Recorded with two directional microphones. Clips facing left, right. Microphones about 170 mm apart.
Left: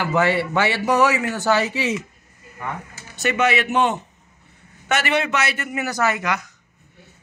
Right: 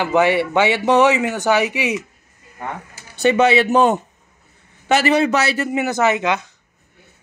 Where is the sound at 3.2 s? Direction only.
30° right (ahead or behind).